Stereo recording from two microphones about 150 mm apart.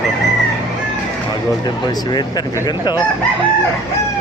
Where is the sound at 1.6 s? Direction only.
30° left (ahead or behind).